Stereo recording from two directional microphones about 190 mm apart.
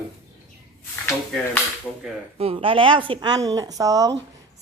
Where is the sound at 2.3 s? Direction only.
30° right (ahead or behind).